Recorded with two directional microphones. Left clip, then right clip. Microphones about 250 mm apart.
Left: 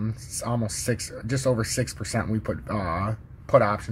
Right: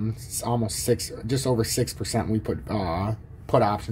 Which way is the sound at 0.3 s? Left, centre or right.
Centre.